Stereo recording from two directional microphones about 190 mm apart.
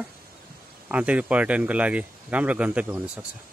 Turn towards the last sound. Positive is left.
turn(degrees=-5)  # may be behind; listen again after turning